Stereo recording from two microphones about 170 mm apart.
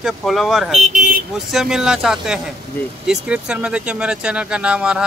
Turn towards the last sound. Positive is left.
turn(degrees=-5)  # may be behind; listen again after turning